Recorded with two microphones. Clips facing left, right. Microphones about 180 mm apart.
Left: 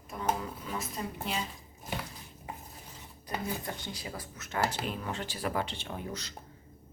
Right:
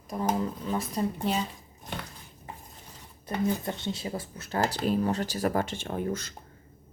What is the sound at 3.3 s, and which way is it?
Speech, 25° right (ahead or behind).